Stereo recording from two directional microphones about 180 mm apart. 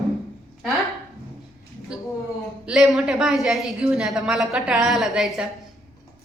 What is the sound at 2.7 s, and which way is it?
A woman's voice, centre (ahead or behind).